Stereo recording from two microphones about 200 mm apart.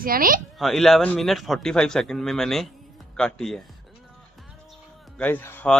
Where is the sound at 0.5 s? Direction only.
Centre (ahead or behind).